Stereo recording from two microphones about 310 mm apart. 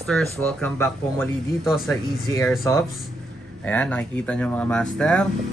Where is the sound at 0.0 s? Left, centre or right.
Centre.